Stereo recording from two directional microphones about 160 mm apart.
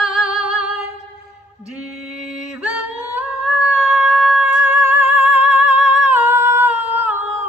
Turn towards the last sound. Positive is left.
turn(degrees=-10)  # may be behind; listen again after turning